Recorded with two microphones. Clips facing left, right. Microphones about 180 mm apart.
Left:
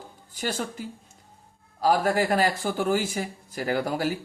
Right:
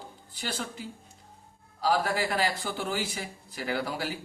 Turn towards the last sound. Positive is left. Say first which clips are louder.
# left 6 dB
turn(degrees=45)  # may be behind; listen again after turning